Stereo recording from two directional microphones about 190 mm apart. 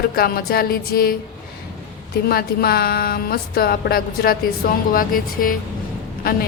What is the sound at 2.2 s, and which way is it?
Speech, 50° left (ahead or behind).